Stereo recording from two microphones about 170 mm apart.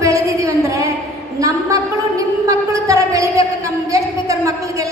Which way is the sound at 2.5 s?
20° right (ahead or behind).